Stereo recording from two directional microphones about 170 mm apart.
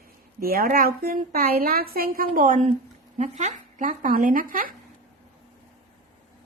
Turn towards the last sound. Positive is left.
turn(degrees=-55)  # may be behind; listen again after turning